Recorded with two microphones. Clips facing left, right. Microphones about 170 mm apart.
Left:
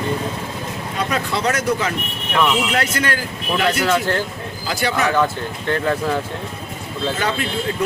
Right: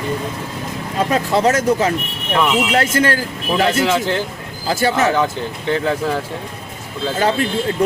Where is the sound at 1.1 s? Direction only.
30° right (ahead or behind).